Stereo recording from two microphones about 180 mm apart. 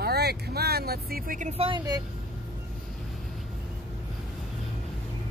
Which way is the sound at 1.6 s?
25° right (ahead or behind).